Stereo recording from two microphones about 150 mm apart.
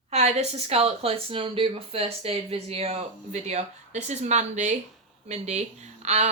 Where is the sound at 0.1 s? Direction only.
45° right (ahead or behind).